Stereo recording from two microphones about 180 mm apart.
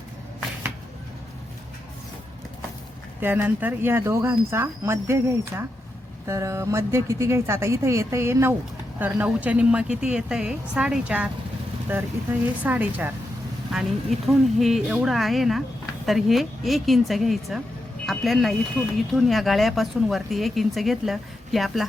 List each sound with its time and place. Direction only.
3.2 s speech: 10° right (ahead or behind)